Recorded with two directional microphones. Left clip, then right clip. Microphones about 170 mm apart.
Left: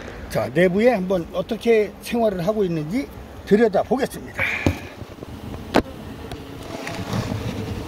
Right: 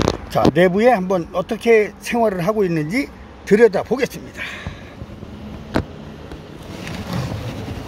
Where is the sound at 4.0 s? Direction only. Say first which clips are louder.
Right 1 dB; 40° right (ahead or behind).